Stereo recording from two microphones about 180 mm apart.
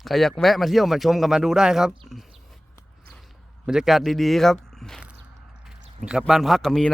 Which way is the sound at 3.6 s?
5° right (ahead or behind).